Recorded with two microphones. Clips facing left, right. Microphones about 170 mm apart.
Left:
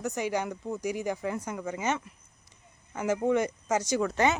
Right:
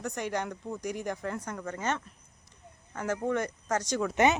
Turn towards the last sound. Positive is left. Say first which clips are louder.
# right 1 dB
turn(degrees=-20)  # may be behind; listen again after turning